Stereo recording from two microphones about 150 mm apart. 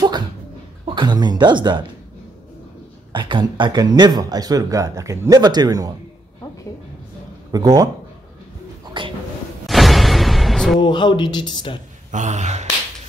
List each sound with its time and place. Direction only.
0.8 s speech: 30° right (ahead or behind)
3.1 s speech: 30° right (ahead or behind)
7.5 s speech: 25° right (ahead or behind)
9.0 s a sound: 30° right (ahead or behind)
9.7 s music: centre (ahead or behind)
10.8 s speech: 30° left (ahead or behind)
12.1 s speech: 50° right (ahead or behind)